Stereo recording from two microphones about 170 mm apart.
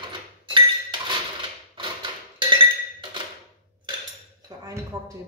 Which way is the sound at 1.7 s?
30° right (ahead or behind).